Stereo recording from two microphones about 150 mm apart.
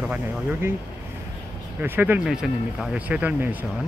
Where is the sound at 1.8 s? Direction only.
15° right (ahead or behind).